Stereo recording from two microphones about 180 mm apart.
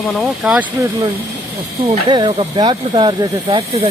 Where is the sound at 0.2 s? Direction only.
5° right (ahead or behind).